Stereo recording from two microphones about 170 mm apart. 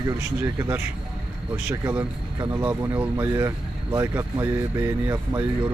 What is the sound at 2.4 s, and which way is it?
Speech, 25° right (ahead or behind).